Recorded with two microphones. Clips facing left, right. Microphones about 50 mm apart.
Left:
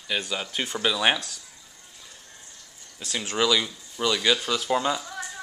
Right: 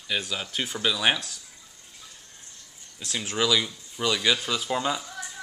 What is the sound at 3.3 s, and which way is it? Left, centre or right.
Speech, centre.